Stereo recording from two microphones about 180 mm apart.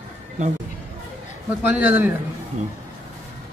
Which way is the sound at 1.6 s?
10° right (ahead or behind).